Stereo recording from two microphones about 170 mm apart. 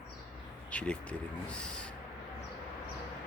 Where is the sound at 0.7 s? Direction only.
10° left (ahead or behind).